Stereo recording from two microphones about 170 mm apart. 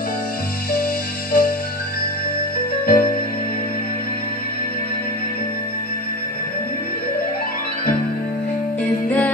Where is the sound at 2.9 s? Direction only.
55° left (ahead or behind).